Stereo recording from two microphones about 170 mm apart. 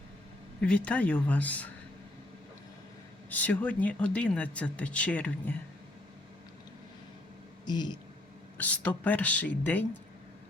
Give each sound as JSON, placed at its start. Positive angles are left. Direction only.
{"t": 0.6, "sound": "speech", "side_deg": 5}
{"t": 3.2, "sound": "speech", "side_deg": 10}
{"t": 7.6, "sound": "speech", "side_deg": 25}
{"t": 8.5, "sound": "speech", "side_deg": 10}